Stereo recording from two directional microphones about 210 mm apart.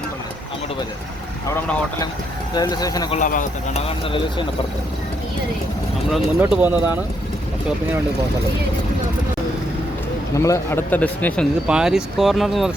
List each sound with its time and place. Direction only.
1.5 s a man's voice: 10° left (ahead or behind)
3.2 s speech: 40° left (ahead or behind)
3.8 s speech: 25° left (ahead or behind)
6.1 s speech: centre (ahead or behind)
10.3 s a man's voice: 15° left (ahead or behind)
11.7 s speech: 5° right (ahead or behind)